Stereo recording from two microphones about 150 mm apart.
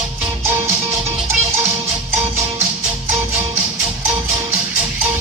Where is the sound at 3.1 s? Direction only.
20° right (ahead or behind).